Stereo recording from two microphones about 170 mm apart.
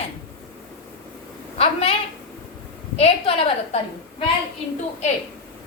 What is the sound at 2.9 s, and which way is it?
A woman's voice, 35° left (ahead or behind).